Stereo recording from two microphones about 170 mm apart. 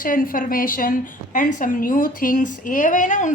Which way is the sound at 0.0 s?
55° left (ahead or behind).